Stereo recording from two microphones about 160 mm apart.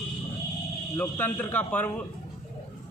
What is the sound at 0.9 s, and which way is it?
Speech, 15° left (ahead or behind).